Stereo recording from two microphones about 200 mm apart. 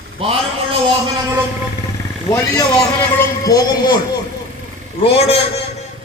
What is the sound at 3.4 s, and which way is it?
Speech, 20° left (ahead or behind).